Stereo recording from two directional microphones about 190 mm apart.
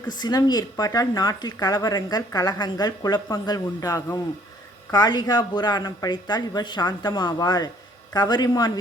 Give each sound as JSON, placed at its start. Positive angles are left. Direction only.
{"t": 0.2, "sound": "speech", "side_deg": 20}